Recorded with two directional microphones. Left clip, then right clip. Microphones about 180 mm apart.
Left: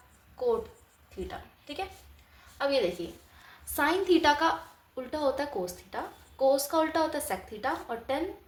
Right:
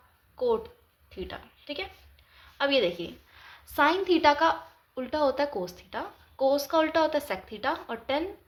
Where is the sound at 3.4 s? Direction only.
20° right (ahead or behind).